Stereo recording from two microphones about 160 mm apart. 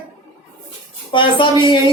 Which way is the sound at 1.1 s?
30° left (ahead or behind).